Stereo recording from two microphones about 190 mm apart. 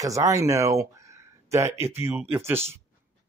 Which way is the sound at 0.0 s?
15° right (ahead or behind).